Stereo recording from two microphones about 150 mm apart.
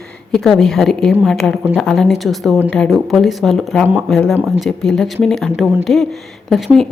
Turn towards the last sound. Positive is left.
turn(degrees=0)  # may be behind; listen again after turning